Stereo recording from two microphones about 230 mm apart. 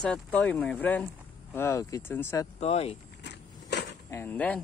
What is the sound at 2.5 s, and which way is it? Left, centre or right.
Speech, left.